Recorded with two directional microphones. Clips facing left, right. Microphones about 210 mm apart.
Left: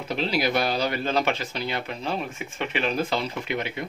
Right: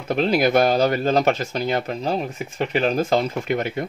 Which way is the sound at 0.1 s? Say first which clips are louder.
Right 7 dB; 50° right (ahead or behind).